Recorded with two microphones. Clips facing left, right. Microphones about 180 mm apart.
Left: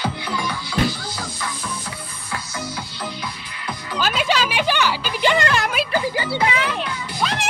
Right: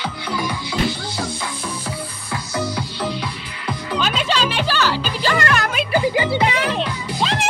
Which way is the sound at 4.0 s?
5° left (ahead or behind).